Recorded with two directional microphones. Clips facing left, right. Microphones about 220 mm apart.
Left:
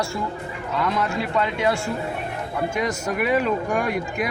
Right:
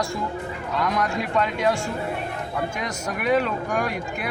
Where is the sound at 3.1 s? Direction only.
5° left (ahead or behind).